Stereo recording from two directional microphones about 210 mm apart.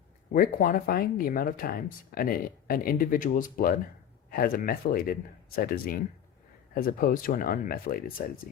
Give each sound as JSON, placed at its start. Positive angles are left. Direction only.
{"t": 0.3, "sound": "speech", "side_deg": 45}